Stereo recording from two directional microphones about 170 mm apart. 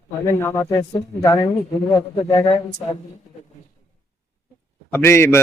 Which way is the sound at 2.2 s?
25° left (ahead or behind).